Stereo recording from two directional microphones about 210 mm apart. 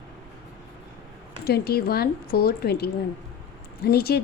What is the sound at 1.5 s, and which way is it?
Speech, 45° left (ahead or behind).